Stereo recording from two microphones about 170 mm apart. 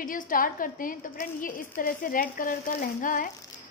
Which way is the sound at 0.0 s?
55° left (ahead or behind).